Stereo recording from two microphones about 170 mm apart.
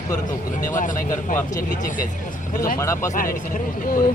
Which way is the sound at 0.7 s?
50° left (ahead or behind).